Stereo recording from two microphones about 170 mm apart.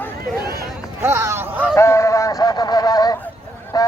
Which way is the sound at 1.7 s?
15° left (ahead or behind).